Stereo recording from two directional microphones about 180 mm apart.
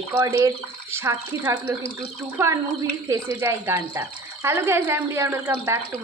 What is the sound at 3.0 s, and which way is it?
Speech, 15° right (ahead or behind).